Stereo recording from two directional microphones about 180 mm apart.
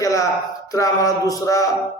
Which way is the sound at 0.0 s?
20° left (ahead or behind).